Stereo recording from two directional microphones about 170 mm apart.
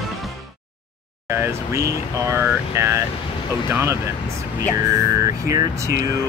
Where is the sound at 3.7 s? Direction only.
15° right (ahead or behind).